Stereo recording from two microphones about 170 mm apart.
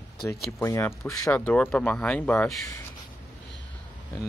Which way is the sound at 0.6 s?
15° left (ahead or behind).